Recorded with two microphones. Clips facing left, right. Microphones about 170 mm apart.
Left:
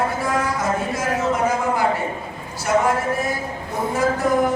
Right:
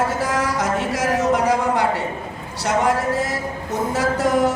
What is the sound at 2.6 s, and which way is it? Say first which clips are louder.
Speech: even; 80° right.